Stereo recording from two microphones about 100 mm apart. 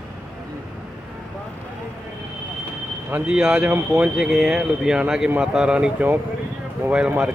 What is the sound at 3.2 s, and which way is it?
Speech, 10° right (ahead or behind).